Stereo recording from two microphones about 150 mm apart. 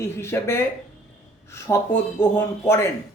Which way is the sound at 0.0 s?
15° left (ahead or behind).